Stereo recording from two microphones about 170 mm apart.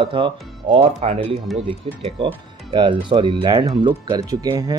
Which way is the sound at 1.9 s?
35° right (ahead or behind).